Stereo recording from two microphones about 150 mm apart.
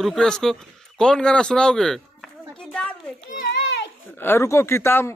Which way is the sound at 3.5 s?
90° left.